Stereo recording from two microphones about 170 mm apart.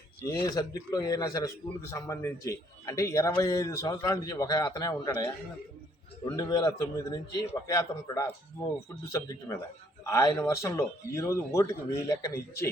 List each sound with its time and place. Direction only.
0.4 s a man's voice: 20° left (ahead or behind)
6.3 s a man's voice: 20° left (ahead or behind)